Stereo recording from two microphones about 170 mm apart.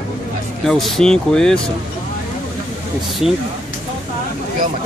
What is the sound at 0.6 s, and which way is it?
Speech, centre (ahead or behind).